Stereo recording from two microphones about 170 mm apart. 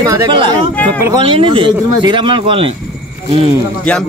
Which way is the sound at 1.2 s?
30° right (ahead or behind).